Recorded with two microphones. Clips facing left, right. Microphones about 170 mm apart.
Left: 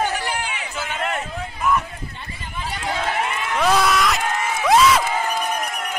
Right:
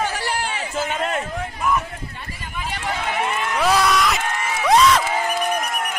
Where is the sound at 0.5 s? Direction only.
35° right (ahead or behind).